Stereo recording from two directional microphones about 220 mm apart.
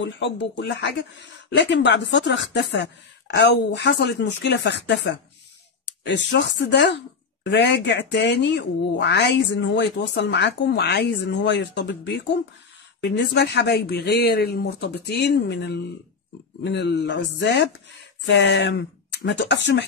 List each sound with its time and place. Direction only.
0.0 s speech: 55° left (ahead or behind)